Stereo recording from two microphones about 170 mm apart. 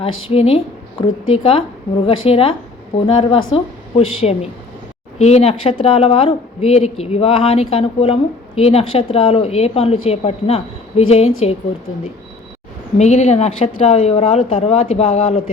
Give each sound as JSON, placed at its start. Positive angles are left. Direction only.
{"t": 0.0, "sound": "speech", "side_deg": 35}
{"t": 13.0, "sound": "speech", "side_deg": 40}